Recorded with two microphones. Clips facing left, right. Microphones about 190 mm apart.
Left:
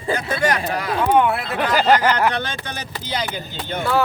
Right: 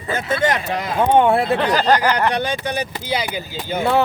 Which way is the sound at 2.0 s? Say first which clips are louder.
Right 1 dB; 15° right (ahead or behind).